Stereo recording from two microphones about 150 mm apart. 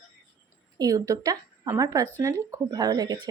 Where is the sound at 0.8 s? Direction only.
25° right (ahead or behind).